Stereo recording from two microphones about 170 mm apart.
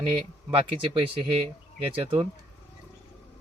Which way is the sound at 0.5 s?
30° right (ahead or behind).